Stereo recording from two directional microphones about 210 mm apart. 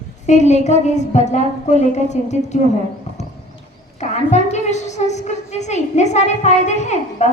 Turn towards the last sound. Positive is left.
turn(degrees=35)  # may be behind; listen again after turning